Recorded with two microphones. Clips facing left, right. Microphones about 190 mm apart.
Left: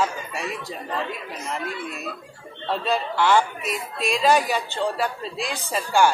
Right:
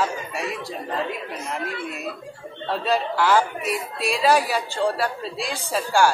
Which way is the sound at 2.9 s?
5° right (ahead or behind).